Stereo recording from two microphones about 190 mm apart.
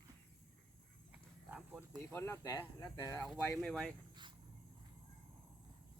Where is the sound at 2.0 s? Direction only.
10° left (ahead or behind).